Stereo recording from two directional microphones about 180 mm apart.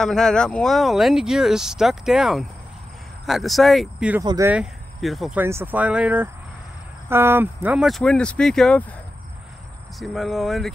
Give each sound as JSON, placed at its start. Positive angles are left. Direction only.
{"t": 0.0, "sound": "speech", "side_deg": 5}
{"t": 4.2, "sound": "speech", "side_deg": -20}
{"t": 4.5, "sound": "speech", "side_deg": -5}
{"t": 5.4, "sound": "speech", "side_deg": -10}
{"t": 9.9, "sound": "speech", "side_deg": 0}